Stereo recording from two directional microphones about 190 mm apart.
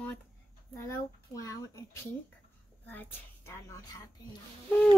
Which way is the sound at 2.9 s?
10° left (ahead or behind).